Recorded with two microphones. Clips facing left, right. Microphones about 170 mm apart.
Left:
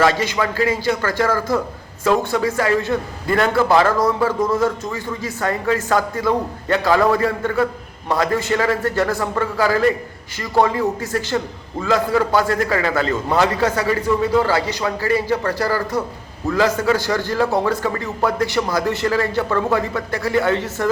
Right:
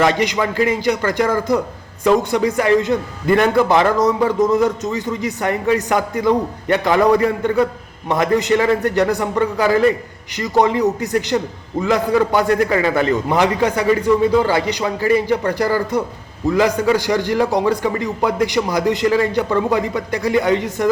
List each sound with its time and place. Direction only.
0.0 s a man's voice: 20° right (ahead or behind)